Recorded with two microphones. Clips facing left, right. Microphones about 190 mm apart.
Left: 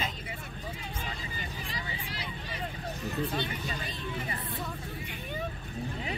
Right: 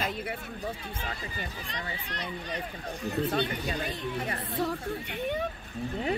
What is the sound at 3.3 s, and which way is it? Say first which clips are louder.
Speech: right 5 dB; 60° right (ahead or behind).